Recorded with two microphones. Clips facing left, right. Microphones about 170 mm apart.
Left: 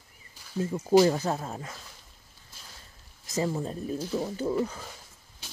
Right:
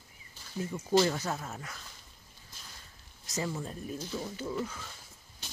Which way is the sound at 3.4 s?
35° left (ahead or behind).